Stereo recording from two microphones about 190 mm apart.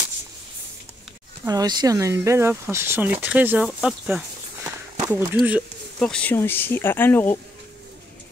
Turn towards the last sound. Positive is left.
turn(degrees=10)  # may be behind; listen again after turning